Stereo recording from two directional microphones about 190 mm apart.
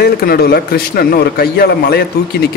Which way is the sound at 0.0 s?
55° left (ahead or behind).